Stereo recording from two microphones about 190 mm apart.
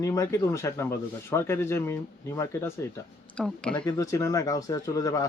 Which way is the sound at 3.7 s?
20° left (ahead or behind).